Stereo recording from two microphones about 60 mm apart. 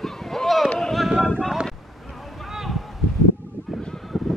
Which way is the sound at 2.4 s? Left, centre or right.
Centre.